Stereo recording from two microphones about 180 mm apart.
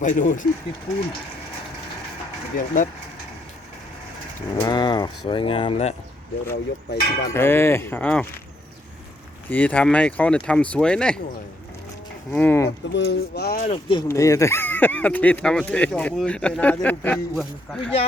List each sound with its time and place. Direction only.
0.0 s speech: 45° left (ahead or behind)
2.6 s speech: 45° left (ahead or behind)
4.6 s speech: 25° left (ahead or behind)
6.5 s speech: 65° left (ahead or behind)
7.3 s speech: 15° left (ahead or behind)
9.5 s speech: 10° left (ahead or behind)
12.3 s speech: 10° left (ahead or behind)
12.9 s speech: 70° left (ahead or behind)
13.6 s speech: 35° left (ahead or behind)
14.1 s speech: 15° left (ahead or behind)